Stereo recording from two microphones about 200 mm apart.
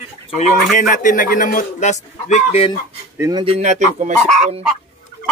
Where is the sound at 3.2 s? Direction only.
20° right (ahead or behind).